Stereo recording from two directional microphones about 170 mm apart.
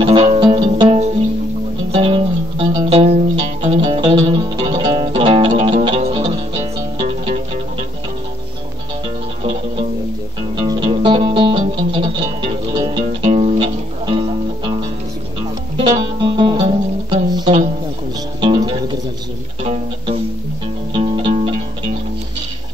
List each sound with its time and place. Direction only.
0.0 s music: 35° right (ahead or behind)
9.4 s music: 35° right (ahead or behind)
12.7 s music: 20° right (ahead or behind)
13.2 s music: 35° right (ahead or behind)
19.6 s music: 40° right (ahead or behind)